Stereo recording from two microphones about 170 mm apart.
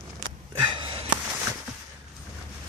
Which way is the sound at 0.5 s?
30° right (ahead or behind).